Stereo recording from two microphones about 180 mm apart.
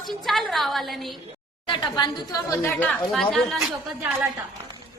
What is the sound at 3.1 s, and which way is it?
Speech, centre (ahead or behind).